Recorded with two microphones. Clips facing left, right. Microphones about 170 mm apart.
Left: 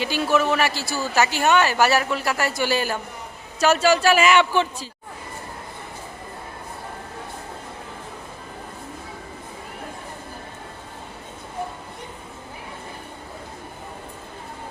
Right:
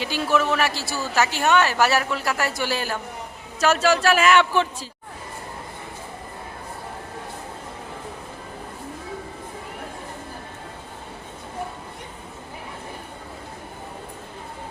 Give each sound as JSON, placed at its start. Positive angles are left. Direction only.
{"t": 0.0, "sound": "a woman's voice", "side_deg": 0}